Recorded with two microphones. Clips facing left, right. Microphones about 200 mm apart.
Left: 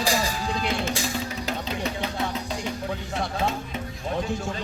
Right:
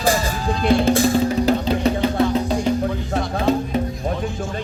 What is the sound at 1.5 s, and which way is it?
Music, 35° right (ahead or behind).